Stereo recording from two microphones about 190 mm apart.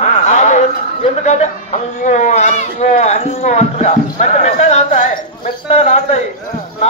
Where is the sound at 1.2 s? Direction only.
35° left (ahead or behind).